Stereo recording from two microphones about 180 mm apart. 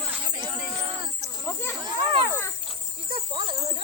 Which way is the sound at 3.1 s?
30° right (ahead or behind).